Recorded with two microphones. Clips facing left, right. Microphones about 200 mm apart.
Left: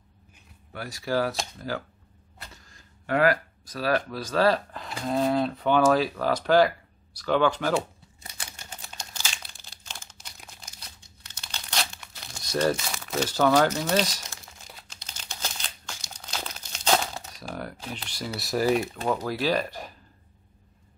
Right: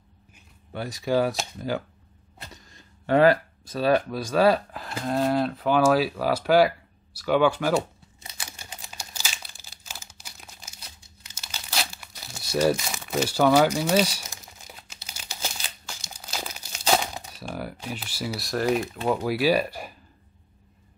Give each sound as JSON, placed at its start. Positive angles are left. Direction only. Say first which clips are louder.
{"t": 0.7, "sound": "speech", "louder": "right 3 dB", "side_deg": -20}
{"t": 2.4, "sound": "speech", "louder": "right 3 dB", "side_deg": -20}
{"t": 4.8, "sound": "speech", "louder": "even", "side_deg": 0}
{"t": 8.9, "sound": "crumpling", "louder": "even", "side_deg": -10}
{"t": 19.0, "sound": "speech", "louder": "right 6 dB", "side_deg": -10}